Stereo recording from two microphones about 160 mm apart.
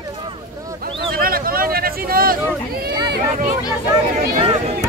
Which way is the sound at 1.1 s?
65° right (ahead or behind).